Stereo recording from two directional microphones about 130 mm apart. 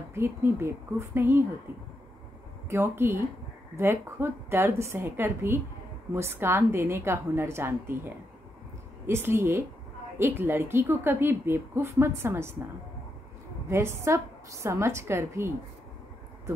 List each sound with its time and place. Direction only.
0.1 s a woman's voice: 20° right (ahead or behind)
2.7 s a woman's voice: 20° right (ahead or behind)
13.7 s a woman's voice: 20° right (ahead or behind)